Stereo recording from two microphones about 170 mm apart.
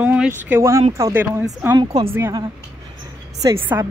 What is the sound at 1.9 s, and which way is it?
Speech, 40° right (ahead or behind).